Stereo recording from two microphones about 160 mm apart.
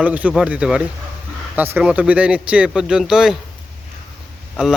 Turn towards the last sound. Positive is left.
turn(degrees=0)  # may be behind; listen again after turning